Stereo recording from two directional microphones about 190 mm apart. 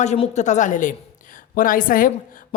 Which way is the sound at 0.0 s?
35° left (ahead or behind).